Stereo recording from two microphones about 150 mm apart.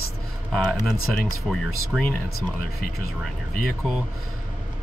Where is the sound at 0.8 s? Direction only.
5° left (ahead or behind).